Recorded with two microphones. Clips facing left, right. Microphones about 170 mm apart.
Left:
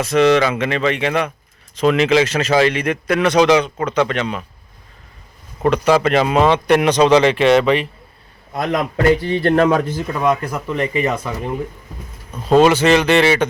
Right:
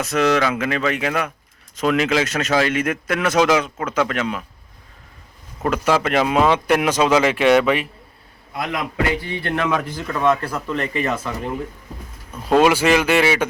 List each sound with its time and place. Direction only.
0.0 s speech: centre (ahead or behind)
5.6 s speech: 5° right (ahead or behind)
8.5 s a man's voice: 40° left (ahead or behind)
9.8 s speech: 20° left (ahead or behind)
10.2 s speech: 10° left (ahead or behind)
12.6 s speech: 10° right (ahead or behind)